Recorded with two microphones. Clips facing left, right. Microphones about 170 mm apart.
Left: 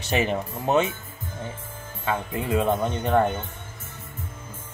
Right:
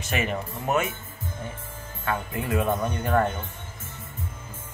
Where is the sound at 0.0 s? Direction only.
30° left (ahead or behind).